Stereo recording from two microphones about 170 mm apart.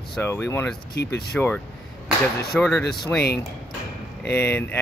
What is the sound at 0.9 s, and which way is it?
Speech, 70° left (ahead or behind).